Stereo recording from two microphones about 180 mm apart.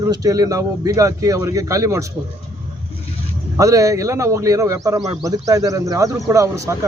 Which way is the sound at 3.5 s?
20° right (ahead or behind).